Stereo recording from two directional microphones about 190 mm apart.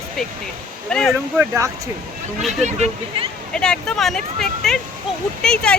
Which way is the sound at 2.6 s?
35° right (ahead or behind).